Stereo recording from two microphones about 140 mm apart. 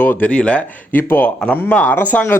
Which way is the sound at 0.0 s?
10° left (ahead or behind).